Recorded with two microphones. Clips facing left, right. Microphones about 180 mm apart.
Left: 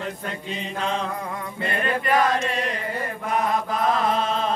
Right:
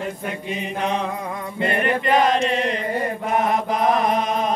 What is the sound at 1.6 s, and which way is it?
Chant, 20° right (ahead or behind).